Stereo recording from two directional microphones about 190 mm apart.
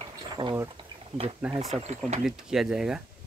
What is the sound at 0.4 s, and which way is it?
Speech, 25° right (ahead or behind).